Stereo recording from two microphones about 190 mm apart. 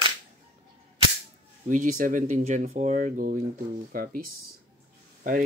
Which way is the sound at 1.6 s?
40° right (ahead or behind).